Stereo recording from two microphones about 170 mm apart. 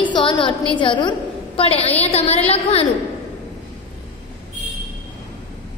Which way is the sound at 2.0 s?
35° left (ahead or behind).